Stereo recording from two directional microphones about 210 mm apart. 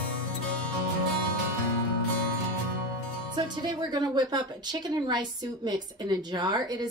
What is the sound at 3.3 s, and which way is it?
A woman's voice, 20° right (ahead or behind).